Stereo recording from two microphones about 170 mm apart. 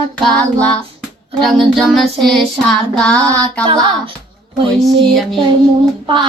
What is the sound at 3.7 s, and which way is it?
Child singing, 30° right (ahead or behind).